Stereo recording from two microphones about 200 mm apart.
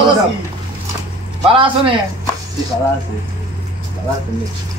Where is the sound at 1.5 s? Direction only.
25° right (ahead or behind).